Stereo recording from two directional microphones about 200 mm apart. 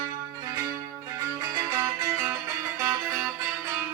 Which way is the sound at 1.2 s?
15° right (ahead or behind).